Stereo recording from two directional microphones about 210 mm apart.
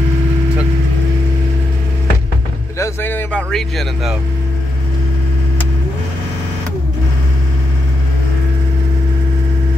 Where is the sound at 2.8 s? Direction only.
10° left (ahead or behind).